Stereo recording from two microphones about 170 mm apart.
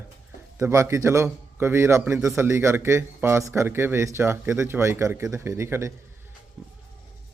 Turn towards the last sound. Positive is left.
turn(degrees=-15)  # may be behind; listen again after turning